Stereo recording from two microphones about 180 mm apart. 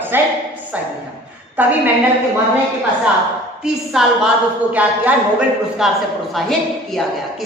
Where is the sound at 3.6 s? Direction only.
5° right (ahead or behind).